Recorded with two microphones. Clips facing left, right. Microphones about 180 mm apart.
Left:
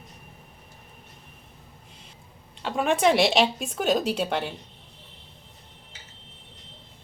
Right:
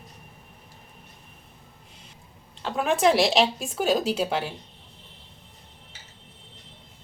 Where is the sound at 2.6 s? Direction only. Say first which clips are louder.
Even; centre (ahead or behind).